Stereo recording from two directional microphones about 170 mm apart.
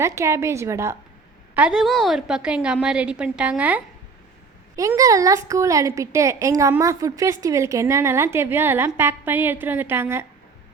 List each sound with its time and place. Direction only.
0.0 s a woman's voice: 15° right (ahead or behind)
4.8 s a woman's voice: 20° right (ahead or behind)